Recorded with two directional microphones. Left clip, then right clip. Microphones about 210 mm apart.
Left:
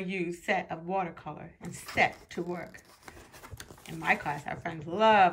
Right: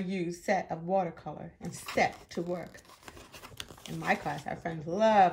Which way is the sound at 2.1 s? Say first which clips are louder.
Right 1 dB; centre (ahead or behind).